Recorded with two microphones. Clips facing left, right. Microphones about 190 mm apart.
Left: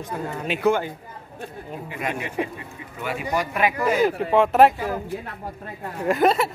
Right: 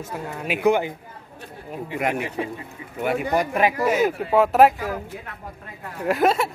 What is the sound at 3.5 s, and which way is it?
Speech, 35° right (ahead or behind).